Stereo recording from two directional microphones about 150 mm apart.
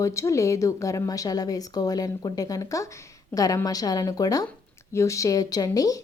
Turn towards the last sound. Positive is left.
turn(degrees=25)  # may be behind; listen again after turning